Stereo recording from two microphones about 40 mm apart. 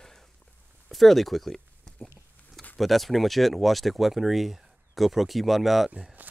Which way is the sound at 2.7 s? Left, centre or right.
Centre.